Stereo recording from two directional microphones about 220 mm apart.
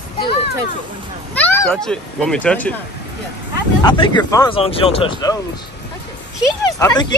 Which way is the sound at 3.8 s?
20° left (ahead or behind).